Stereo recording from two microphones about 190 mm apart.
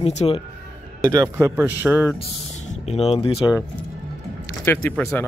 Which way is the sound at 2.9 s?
30° left (ahead or behind).